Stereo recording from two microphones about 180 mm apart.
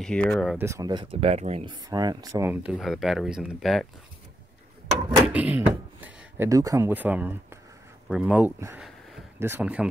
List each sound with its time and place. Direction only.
0.0 s speech: 5° left (ahead or behind)
0.6 s speech: 15° right (ahead or behind); by 1.8 s 35° right (ahead or behind)
1.9 s speech: 20° right (ahead or behind); by 3.8 s centre (ahead or behind)
5.3 s speech: 10° right (ahead or behind)
8.7 s a sound: centre (ahead or behind)
9.4 s speech: 10° right (ahead or behind)